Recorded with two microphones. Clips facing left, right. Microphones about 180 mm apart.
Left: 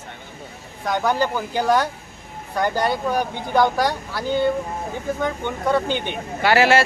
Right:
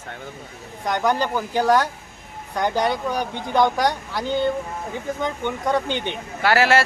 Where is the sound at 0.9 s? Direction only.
5° left (ahead or behind).